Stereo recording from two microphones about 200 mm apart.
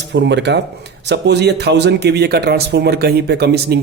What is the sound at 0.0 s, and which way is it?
Speech, 60° right (ahead or behind).